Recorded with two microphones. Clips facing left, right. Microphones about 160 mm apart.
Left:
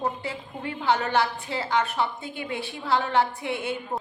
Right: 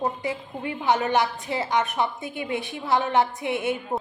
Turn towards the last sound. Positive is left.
turn(degrees=-20)  # may be behind; listen again after turning